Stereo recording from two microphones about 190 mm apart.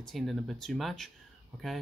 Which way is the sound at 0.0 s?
Centre (ahead or behind).